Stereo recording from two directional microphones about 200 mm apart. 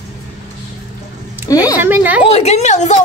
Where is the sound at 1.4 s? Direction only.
15° left (ahead or behind).